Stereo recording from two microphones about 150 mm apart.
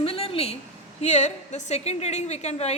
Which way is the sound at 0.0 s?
40° left (ahead or behind).